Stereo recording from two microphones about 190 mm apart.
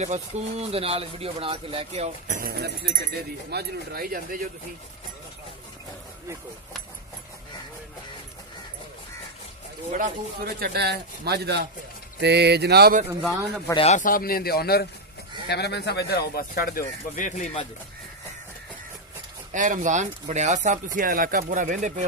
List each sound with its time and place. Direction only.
0.0 s speech: 35° right (ahead or behind)
9.9 s speech: 45° right (ahead or behind)
13.7 s speech: 40° left (ahead or behind)
19.5 s speech: 40° right (ahead or behind)